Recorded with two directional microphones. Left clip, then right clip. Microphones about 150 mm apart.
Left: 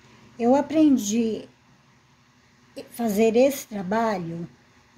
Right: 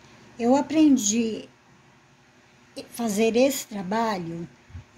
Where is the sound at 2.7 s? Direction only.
25° left (ahead or behind).